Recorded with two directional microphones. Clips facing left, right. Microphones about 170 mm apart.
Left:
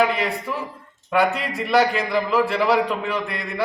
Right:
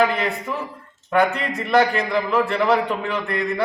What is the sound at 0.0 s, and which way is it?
A man's voice, centre (ahead or behind).